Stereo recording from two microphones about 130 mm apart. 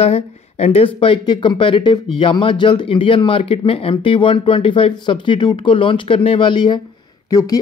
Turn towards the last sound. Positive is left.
turn(degrees=30)  # may be behind; listen again after turning